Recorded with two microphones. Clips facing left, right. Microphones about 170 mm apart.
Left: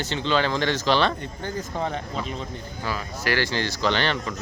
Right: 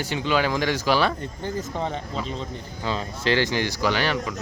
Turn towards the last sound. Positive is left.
turn(degrees=-5)  # may be behind; listen again after turning